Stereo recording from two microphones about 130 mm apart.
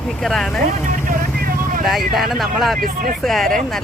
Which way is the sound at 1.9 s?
Centre (ahead or behind).